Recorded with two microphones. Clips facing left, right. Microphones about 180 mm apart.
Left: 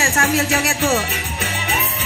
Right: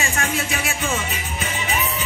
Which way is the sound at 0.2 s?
70° left (ahead or behind).